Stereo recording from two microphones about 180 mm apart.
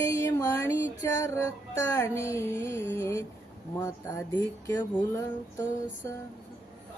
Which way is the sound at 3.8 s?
20° left (ahead or behind).